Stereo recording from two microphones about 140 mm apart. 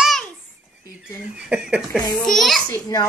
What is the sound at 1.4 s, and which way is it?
Speech, 5° right (ahead or behind).